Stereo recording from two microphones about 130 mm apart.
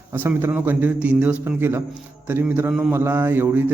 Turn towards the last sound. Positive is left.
turn(degrees=-15)  # may be behind; listen again after turning